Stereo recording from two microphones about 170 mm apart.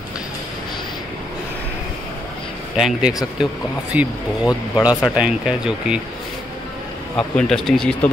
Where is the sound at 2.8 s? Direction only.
5° right (ahead or behind).